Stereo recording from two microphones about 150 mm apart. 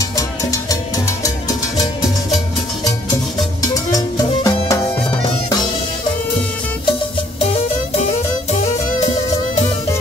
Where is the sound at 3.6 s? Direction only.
25° left (ahead or behind).